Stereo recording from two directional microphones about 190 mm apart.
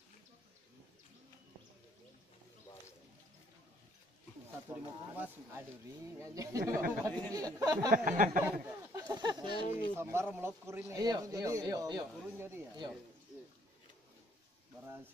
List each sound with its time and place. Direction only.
4.6 s speech: 10° right (ahead or behind)
7.1 s speech: 5° left (ahead or behind)
7.3 s speech: 20° right (ahead or behind)
7.9 s a sound: 45° right (ahead or behind)
8.5 s speech: 15° right (ahead or behind)
9.9 s speech: 15° right (ahead or behind)